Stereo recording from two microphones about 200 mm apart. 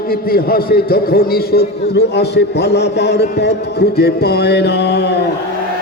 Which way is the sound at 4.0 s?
50° left (ahead or behind).